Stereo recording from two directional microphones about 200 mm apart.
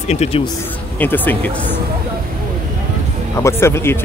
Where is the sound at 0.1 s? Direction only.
30° left (ahead or behind).